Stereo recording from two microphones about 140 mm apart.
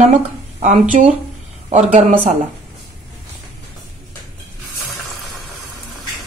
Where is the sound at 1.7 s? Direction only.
55° right (ahead or behind).